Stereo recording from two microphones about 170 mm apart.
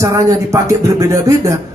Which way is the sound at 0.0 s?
15° right (ahead or behind).